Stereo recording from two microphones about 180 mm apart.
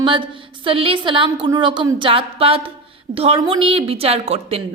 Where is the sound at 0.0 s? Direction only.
25° right (ahead or behind).